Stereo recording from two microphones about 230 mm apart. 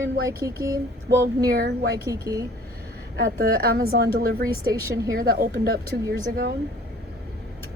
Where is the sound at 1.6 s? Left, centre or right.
Right.